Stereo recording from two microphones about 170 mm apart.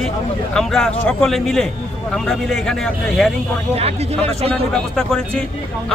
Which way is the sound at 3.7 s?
35° right (ahead or behind).